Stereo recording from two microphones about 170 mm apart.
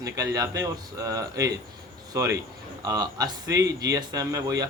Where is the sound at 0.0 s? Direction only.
20° right (ahead or behind).